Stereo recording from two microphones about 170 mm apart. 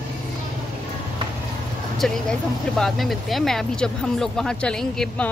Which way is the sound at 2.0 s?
Centre (ahead or behind).